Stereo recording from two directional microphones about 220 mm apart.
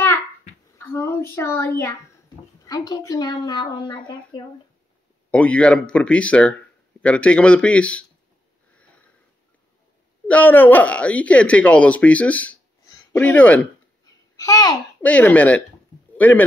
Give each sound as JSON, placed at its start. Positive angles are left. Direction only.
{"t": 0.7, "sound": "speech", "side_deg": 10}
{"t": 5.3, "sound": "speech", "side_deg": 5}
{"t": 8.7, "sound": "sniff", "side_deg": 5}
{"t": 10.2, "sound": "speech", "side_deg": 5}
{"t": 12.8, "sound": "babbling", "side_deg": 10}
{"t": 15.0, "sound": "speech", "side_deg": 5}